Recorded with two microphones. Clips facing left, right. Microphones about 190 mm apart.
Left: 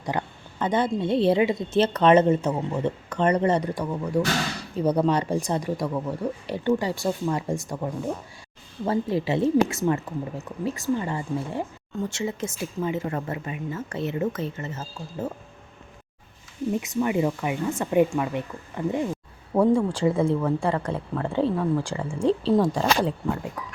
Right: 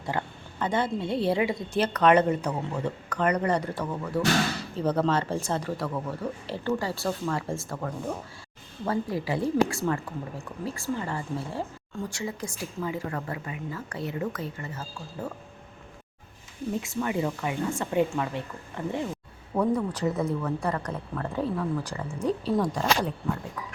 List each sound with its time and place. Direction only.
0.0 s a woman's voice: 15° left (ahead or behind)
16.8 s speech: 15° left (ahead or behind)
19.5 s a woman's voice: 30° left (ahead or behind)